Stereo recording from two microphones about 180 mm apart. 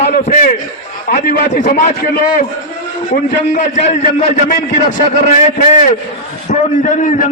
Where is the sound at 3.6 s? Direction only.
40° left (ahead or behind).